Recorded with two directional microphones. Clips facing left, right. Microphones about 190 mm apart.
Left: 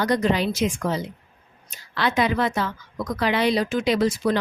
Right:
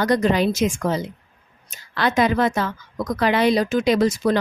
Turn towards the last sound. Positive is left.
turn(degrees=-45)  # may be behind; listen again after turning